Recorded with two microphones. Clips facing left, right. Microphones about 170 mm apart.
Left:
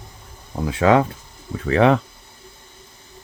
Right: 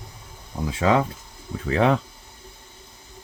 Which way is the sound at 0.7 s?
65° left (ahead or behind).